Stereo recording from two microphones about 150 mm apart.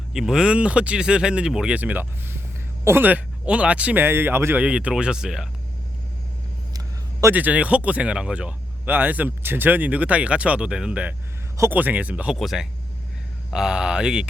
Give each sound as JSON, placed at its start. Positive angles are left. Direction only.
{"t": 0.1, "sound": "speech", "side_deg": -5}
{"t": 6.7, "sound": "a sound", "side_deg": -20}
{"t": 7.3, "sound": "speech", "side_deg": -10}